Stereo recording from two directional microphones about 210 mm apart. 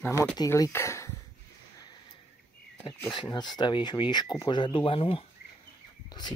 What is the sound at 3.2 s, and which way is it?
Speech, 20° left (ahead or behind).